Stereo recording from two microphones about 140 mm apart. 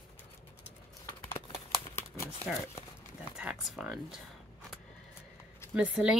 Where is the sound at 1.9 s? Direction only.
15° left (ahead or behind).